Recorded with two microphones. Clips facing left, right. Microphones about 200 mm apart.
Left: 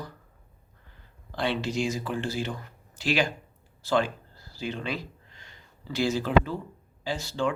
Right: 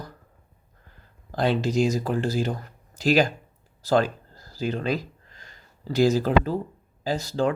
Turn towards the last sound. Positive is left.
turn(degrees=-40)  # may be behind; listen again after turning